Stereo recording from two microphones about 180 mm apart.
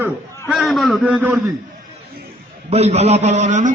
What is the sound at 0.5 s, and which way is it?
Speech, centre (ahead or behind).